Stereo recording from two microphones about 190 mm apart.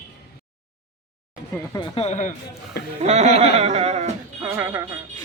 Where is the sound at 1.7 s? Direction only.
25° left (ahead or behind).